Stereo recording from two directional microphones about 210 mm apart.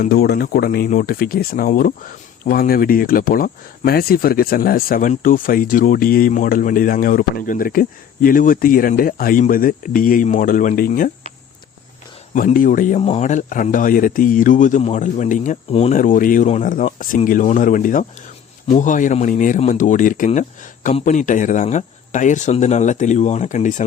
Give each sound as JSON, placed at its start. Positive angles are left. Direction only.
{"t": 0.0, "sound": "speech", "side_deg": 45}
{"t": 12.3, "sound": "speech", "side_deg": 40}